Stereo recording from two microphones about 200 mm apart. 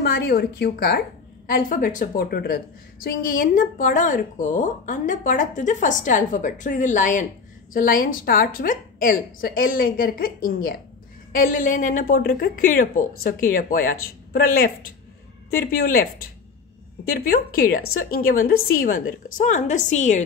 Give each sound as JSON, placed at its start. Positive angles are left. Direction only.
{"t": 0.0, "sound": "a woman's voice", "side_deg": 50}